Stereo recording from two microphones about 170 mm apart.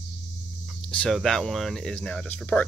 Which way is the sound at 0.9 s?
5° left (ahead or behind).